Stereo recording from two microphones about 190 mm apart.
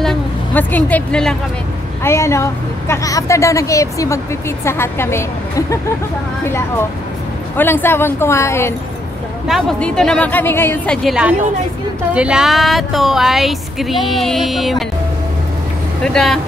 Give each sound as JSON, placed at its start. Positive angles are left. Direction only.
{"t": 0.0, "sound": "a sound", "side_deg": 5}
{"t": 2.0, "sound": "a woman's voice", "side_deg": 15}
{"t": 7.5, "sound": "a woman's voice", "side_deg": 10}
{"t": 9.5, "sound": "speech", "side_deg": 0}
{"t": 11.1, "sound": "speech", "side_deg": -5}
{"t": 16.0, "sound": "speech", "side_deg": 5}